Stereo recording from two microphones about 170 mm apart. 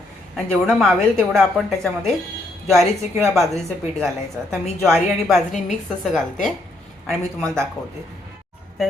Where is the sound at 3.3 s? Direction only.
Centre (ahead or behind).